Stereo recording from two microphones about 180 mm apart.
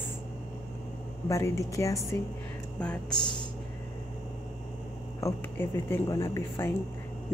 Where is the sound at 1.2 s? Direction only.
15° left (ahead or behind).